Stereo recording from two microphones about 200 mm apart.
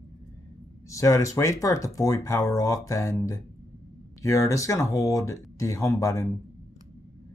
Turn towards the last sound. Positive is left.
turn(degrees=15)  # may be behind; listen again after turning